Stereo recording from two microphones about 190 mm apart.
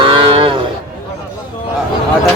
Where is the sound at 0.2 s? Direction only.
25° right (ahead or behind).